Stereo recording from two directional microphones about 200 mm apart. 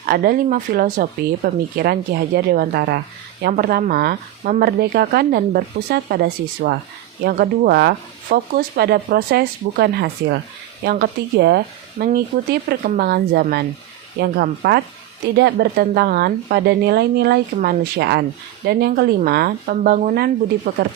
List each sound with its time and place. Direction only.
0.0 s a woman's voice: 45° right (ahead or behind)